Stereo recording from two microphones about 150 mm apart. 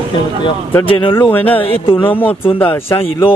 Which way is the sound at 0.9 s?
35° left (ahead or behind).